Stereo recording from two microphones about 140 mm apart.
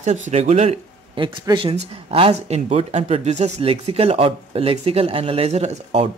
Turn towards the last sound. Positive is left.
turn(degrees=-50)  # may be behind; listen again after turning